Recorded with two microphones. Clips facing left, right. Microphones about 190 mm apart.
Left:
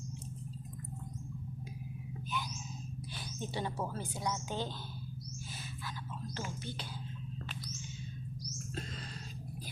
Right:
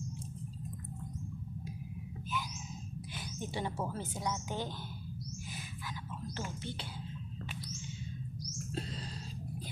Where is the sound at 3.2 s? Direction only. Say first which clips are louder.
Even; 20° right (ahead or behind).